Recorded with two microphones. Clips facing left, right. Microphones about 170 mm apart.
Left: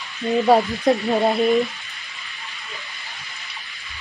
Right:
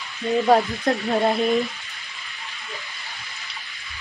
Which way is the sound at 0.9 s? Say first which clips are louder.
Left 6 dB; 10° left (ahead or behind).